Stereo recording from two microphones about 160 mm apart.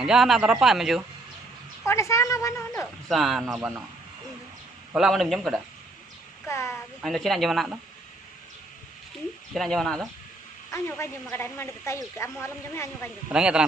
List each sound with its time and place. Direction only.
0.0 s speech: centre (ahead or behind)
1.9 s a woman's voice: 20° left (ahead or behind)
3.1 s speech: centre (ahead or behind)
4.9 s speech: centre (ahead or behind)
6.4 s a woman's voice: 15° left (ahead or behind)
7.0 s speech: centre (ahead or behind)
9.5 s speech: centre (ahead or behind)
10.7 s a woman's voice: 15° left (ahead or behind)
13.3 s speech: 5° right (ahead or behind)